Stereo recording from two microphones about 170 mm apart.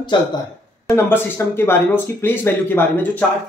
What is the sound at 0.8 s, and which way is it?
Speech, 15° left (ahead or behind).